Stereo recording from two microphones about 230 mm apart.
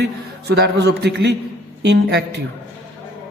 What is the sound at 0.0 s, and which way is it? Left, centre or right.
Speech, right.